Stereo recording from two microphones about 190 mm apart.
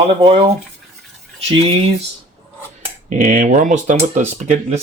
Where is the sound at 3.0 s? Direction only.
45° right (ahead or behind).